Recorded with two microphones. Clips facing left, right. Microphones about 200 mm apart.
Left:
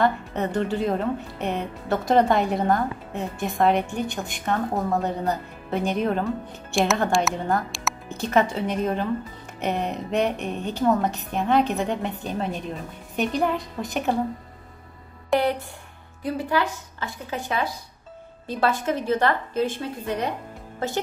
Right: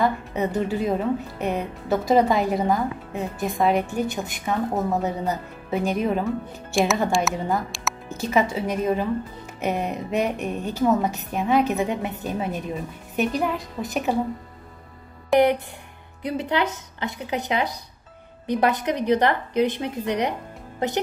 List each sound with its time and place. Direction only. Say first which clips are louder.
0.0 s a woman's voice: even; centre (ahead or behind)
16.2 s a woman's voice: even; 20° right (ahead or behind)